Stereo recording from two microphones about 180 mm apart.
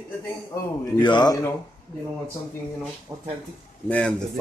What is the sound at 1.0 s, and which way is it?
Speech, 25° left (ahead or behind).